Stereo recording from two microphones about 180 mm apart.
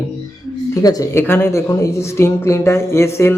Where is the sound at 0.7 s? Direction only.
20° left (ahead or behind).